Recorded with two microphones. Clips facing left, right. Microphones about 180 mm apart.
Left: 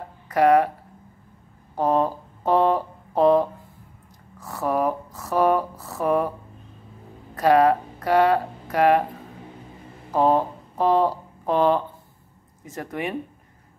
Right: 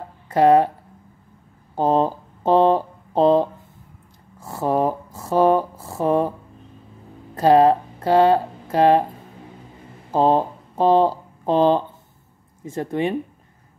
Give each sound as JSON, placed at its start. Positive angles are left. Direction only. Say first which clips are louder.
{"t": 0.3, "sound": "speech", "louder": "right 3 dB", "side_deg": -30}
{"t": 1.8, "sound": "speech", "louder": "right 3 dB", "side_deg": -25}
{"t": 7.3, "sound": "speech", "louder": "right 3 dB", "side_deg": -30}
{"t": 10.1, "sound": "speech", "louder": "right 2 dB", "side_deg": -30}